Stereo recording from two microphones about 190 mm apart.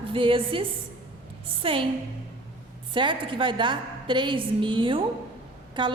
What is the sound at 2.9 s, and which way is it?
A woman's voice, 25° right (ahead or behind).